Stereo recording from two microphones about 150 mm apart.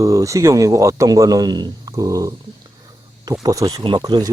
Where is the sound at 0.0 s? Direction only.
20° right (ahead or behind).